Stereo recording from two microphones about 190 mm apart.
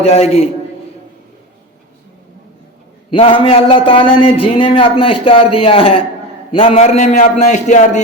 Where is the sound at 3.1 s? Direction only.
30° left (ahead or behind).